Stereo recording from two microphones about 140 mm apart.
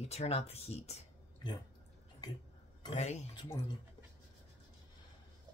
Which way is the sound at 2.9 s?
50° left (ahead or behind).